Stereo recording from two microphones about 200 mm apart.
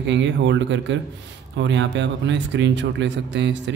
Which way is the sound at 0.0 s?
65° right (ahead or behind).